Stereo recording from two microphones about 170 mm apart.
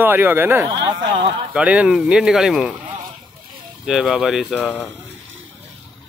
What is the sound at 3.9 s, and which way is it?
Speech, centre (ahead or behind).